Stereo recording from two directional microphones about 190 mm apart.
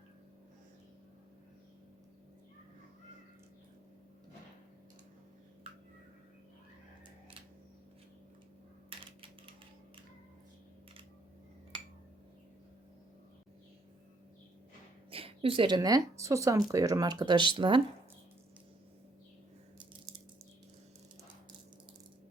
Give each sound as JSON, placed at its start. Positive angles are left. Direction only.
{"t": 8.9, "sound": "typing", "side_deg": -30}
{"t": 15.1, "sound": "speech", "side_deg": -30}